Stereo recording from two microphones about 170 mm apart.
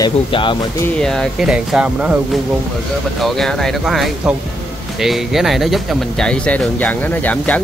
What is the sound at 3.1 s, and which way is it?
Speech, centre (ahead or behind).